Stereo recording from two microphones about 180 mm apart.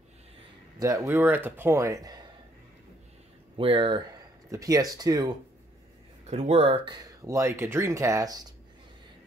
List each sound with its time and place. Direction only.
0.7 s speech: 20° right (ahead or behind)
3.5 s speech: 30° right (ahead or behind)
4.5 s speech: 20° right (ahead or behind)
6.2 s speech: 40° right (ahead or behind); by 8.5 s 20° right (ahead or behind)